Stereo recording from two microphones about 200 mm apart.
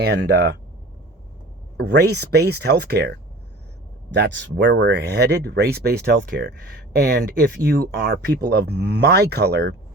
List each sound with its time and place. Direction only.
0.0 s speech: 55° right (ahead or behind)
1.7 s speech: 55° right (ahead or behind)